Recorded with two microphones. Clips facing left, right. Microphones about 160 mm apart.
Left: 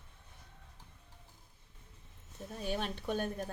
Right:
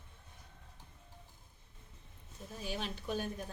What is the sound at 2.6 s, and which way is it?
Speech, 55° left (ahead or behind).